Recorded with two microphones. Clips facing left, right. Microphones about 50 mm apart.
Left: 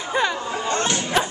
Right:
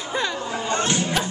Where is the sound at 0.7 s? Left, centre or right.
Centre.